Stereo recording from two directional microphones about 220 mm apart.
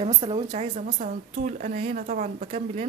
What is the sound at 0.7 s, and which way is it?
A woman's voice, 35° right (ahead or behind).